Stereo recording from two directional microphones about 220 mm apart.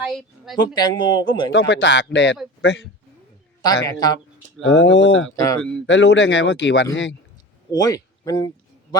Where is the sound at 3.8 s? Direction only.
20° left (ahead or behind).